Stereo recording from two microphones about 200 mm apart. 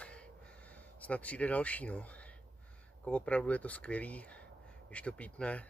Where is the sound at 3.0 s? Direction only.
5° left (ahead or behind).